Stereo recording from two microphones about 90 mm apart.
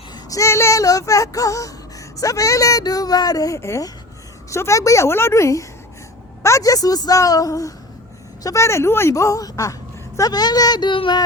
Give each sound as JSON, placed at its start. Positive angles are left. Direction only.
{"t": 0.1, "sound": "speech", "side_deg": 40}